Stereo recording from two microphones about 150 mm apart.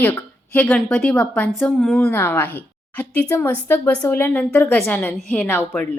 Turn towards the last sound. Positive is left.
turn(degrees=15)  # may be behind; listen again after turning